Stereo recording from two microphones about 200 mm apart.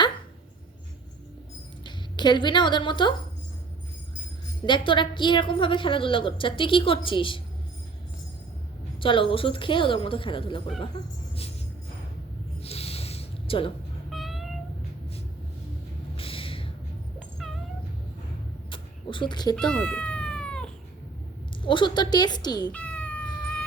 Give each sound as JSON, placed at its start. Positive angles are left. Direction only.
{"t": 1.8, "sound": "speech", "side_deg": 20}
{"t": 4.6, "sound": "a woman's voice", "side_deg": 25}
{"t": 9.0, "sound": "a woman's voice", "side_deg": 25}
{"t": 12.6, "sound": "a sound", "side_deg": 30}
{"t": 14.1, "sound": "meow", "side_deg": 0}
{"t": 16.1, "sound": "a sound", "side_deg": 25}
{"t": 18.7, "sound": "a sound", "side_deg": 25}
{"t": 19.5, "sound": "cat", "side_deg": 5}
{"t": 21.6, "sound": "a woman's voice", "side_deg": 25}
{"t": 22.7, "sound": "cat", "side_deg": 5}